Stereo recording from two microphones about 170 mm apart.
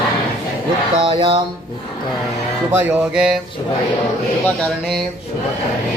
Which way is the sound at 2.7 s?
10° right (ahead or behind).